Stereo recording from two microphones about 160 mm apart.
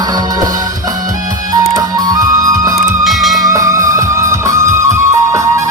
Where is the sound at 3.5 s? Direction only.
20° right (ahead or behind).